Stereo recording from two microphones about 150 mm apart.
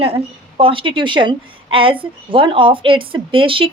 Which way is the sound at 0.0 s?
40° right (ahead or behind).